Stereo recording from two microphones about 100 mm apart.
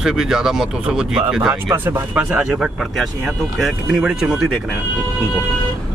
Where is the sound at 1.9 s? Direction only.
20° right (ahead or behind).